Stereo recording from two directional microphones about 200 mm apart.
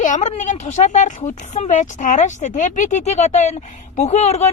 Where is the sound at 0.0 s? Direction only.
35° left (ahead or behind).